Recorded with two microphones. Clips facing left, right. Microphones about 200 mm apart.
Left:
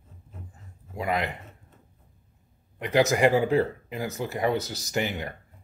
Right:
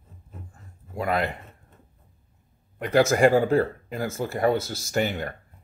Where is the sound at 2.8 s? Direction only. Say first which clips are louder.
Right 3 dB; 15° left (ahead or behind).